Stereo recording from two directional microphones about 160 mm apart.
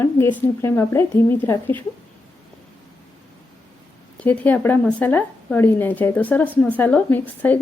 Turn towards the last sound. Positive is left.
turn(degrees=10)  # may be behind; listen again after turning